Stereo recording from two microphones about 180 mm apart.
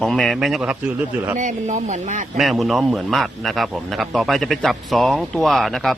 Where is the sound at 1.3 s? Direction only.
45° right (ahead or behind).